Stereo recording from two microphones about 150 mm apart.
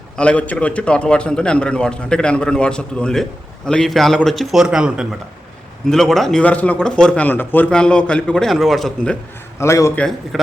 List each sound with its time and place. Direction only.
0.2 s a man's voice: 10° left (ahead or behind)
9.6 s a man's voice: 20° left (ahead or behind)
9.9 s a man's voice: 5° left (ahead or behind)